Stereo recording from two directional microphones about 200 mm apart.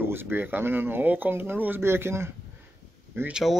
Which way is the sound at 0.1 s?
10° right (ahead or behind).